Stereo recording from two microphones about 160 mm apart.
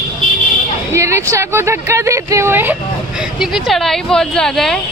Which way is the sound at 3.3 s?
Centre (ahead or behind).